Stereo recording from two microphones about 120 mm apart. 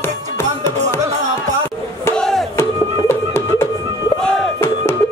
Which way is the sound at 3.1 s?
20° left (ahead or behind).